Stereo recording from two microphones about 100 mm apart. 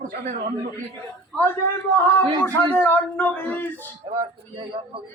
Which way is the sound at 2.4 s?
20° left (ahead or behind).